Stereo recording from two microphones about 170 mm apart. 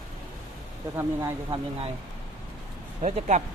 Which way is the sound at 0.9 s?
20° right (ahead or behind).